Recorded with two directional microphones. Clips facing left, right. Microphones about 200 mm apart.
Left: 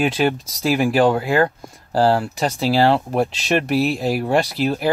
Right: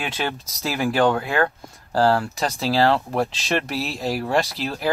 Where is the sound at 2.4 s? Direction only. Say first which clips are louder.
Left 3 dB; 10° left (ahead or behind).